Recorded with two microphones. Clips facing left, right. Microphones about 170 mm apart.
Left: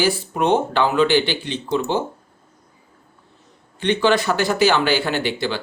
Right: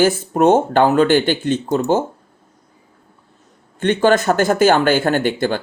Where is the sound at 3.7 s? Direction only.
45° right (ahead or behind).